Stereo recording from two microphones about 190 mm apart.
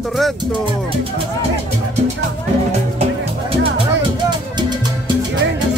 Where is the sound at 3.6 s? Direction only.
25° right (ahead or behind).